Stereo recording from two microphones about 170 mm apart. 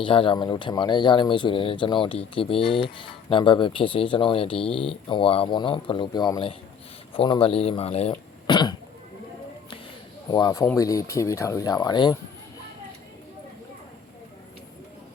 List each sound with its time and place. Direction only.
0.0 s speech: 30° left (ahead or behind)
8.4 s speech: 25° left (ahead or behind)
10.3 s speech: 20° left (ahead or behind)